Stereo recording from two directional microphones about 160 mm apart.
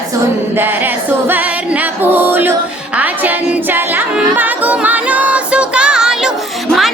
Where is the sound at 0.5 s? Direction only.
15° right (ahead or behind).